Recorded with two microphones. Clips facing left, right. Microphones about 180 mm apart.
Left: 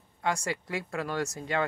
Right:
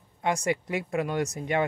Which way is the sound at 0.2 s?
20° right (ahead or behind).